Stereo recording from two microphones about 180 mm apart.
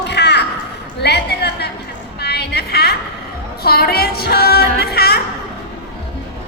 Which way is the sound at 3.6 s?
55° left (ahead or behind).